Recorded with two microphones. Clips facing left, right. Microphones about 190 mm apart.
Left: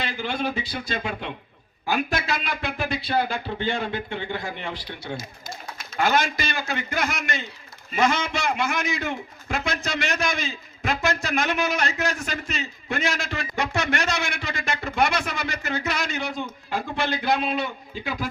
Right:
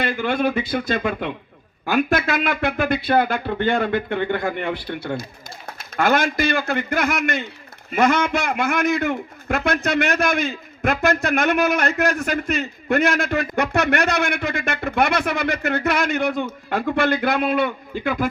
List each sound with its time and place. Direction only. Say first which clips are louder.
0.0 s a man's voice: right 7 dB; 55° right (ahead or behind)